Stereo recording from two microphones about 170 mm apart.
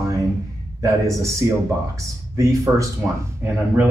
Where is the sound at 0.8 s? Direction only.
20° right (ahead or behind).